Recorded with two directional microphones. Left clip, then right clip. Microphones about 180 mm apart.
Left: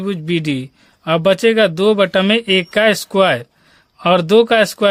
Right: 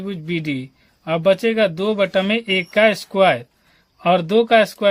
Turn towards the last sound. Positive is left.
turn(degrees=35)  # may be behind; listen again after turning